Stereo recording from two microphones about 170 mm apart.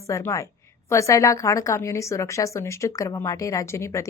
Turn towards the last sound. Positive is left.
turn(degrees=15)  # may be behind; listen again after turning